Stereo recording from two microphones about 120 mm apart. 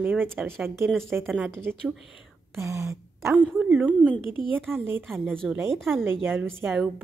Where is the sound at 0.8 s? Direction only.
5° left (ahead or behind).